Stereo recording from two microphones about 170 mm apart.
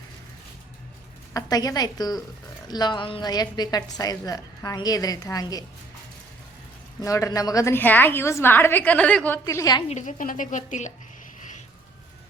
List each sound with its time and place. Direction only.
1.3 s a woman's voice: 20° left (ahead or behind)
7.0 s a woman's voice: 20° left (ahead or behind)
9.4 s a woman's voice: 20° left (ahead or behind)
9.9 s speech: 45° left (ahead or behind)